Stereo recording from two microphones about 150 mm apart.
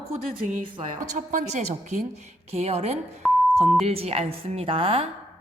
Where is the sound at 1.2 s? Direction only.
55° right (ahead or behind).